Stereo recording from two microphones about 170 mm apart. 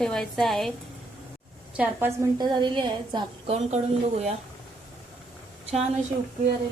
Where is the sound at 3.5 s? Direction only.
40° right (ahead or behind).